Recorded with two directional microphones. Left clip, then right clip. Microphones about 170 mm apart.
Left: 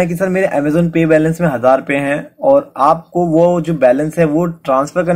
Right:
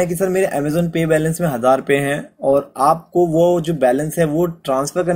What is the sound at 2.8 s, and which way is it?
Speech, 30° right (ahead or behind).